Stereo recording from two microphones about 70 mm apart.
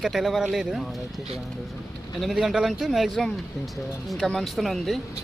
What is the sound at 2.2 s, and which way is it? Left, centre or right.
Speech, centre.